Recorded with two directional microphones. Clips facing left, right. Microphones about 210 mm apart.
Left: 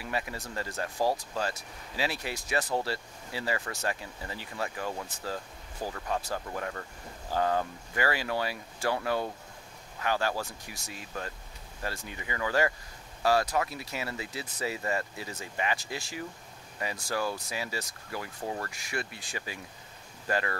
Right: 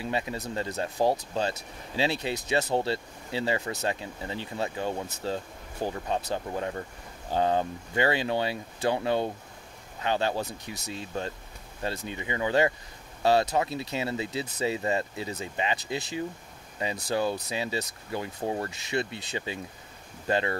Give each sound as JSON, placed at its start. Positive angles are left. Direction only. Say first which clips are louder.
{"t": 0.0, "sound": "speech", "louder": "right 4 dB", "side_deg": -25}